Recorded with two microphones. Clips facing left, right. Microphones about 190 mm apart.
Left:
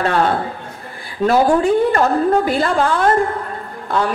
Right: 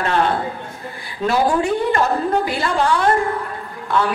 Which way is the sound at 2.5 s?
50° left (ahead or behind).